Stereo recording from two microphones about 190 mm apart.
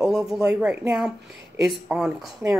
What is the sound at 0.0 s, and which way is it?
Speech, centre (ahead or behind).